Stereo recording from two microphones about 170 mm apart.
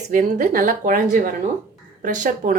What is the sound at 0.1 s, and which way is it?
Speech, 50° right (ahead or behind).